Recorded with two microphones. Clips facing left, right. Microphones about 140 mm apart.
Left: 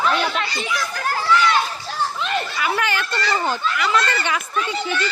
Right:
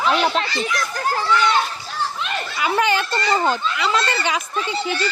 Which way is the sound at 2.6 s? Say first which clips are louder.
Right 8 dB; 20° right (ahead or behind).